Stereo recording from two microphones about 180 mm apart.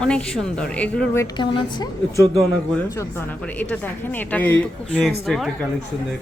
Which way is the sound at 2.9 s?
15° left (ahead or behind).